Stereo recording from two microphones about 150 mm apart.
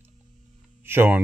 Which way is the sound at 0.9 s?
15° right (ahead or behind).